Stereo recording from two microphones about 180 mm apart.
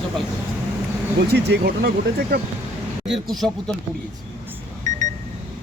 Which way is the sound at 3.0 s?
Centre (ahead or behind).